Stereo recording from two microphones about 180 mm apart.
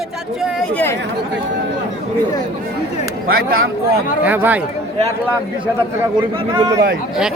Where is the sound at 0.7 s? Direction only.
10° left (ahead or behind).